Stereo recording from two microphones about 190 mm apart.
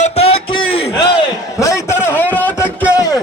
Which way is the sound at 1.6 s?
15° left (ahead or behind).